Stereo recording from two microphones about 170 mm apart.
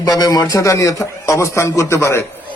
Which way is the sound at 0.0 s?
20° left (ahead or behind).